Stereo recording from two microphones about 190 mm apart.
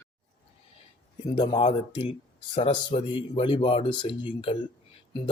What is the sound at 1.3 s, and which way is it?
A man's voice, 20° left (ahead or behind).